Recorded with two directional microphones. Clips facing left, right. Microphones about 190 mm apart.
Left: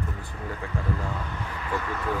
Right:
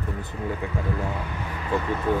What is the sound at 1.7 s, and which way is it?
Speech, 20° right (ahead or behind).